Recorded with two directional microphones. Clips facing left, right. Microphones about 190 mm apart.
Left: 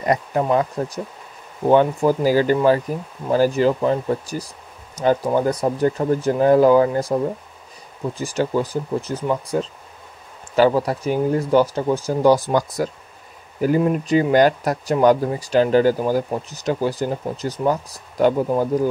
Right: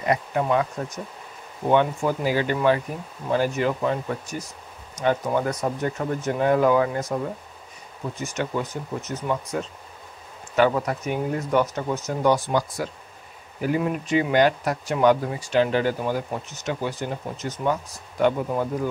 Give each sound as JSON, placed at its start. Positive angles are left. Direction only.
{"t": 0.0, "sound": "speech", "side_deg": 40}